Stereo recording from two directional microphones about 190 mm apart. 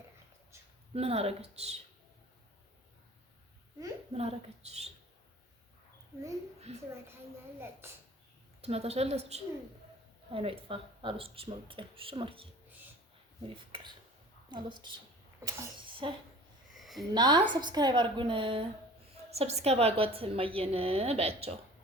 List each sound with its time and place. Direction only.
0.9 s a woman's voice: 30° right (ahead or behind)
4.1 s a woman's voice: 30° right (ahead or behind)
6.7 s a woman's voice: 35° right (ahead or behind)
7.6 s a child's voice: 10° right (ahead or behind)
8.6 s a woman's voice: 35° right (ahead or behind)
14.5 s speech: 25° right (ahead or behind)
16.6 s a sound: centre (ahead or behind)
17.2 s a woman's voice: 25° right (ahead or behind)